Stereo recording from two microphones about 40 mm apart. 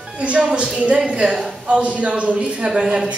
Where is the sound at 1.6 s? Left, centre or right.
Right.